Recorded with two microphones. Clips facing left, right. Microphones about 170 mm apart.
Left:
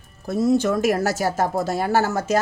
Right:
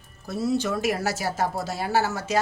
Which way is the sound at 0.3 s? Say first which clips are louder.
Left 6 dB; 45° left (ahead or behind).